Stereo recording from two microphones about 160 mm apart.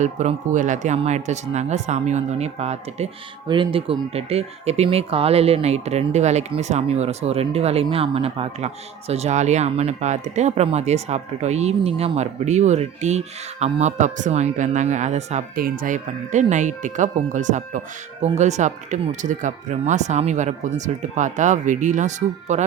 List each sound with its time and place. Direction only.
0.0 s speech: 50° right (ahead or behind)
15.5 s speech: 60° right (ahead or behind)